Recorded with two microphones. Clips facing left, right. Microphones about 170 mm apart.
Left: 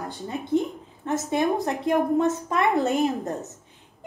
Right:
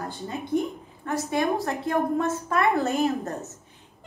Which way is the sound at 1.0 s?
20° left (ahead or behind).